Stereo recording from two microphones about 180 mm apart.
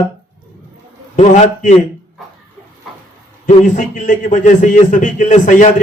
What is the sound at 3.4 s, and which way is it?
A man's voice, 45° left (ahead or behind).